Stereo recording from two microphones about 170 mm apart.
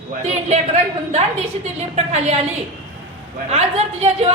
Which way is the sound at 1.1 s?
40° right (ahead or behind).